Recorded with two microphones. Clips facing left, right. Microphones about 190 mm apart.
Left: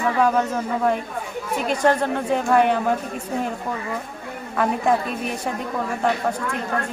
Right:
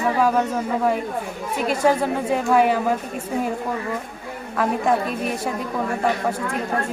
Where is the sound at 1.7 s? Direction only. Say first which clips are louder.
Even; 5° right (ahead or behind).